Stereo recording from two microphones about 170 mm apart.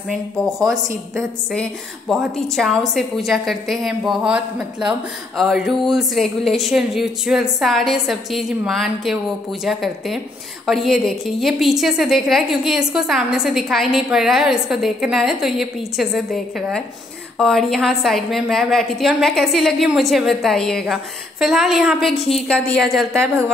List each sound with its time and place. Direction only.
1.1 s speech: 5° left (ahead or behind)
23.2 s speech: 15° right (ahead or behind)